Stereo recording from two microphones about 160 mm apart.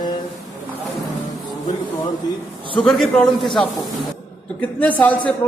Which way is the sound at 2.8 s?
Centre (ahead or behind).